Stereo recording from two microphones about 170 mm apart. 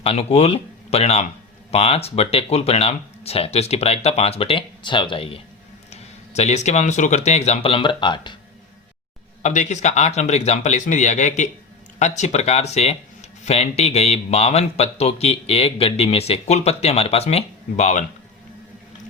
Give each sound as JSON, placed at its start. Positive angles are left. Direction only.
{"t": 0.0, "sound": "speech", "side_deg": 35}
{"t": 9.4, "sound": "speech", "side_deg": 45}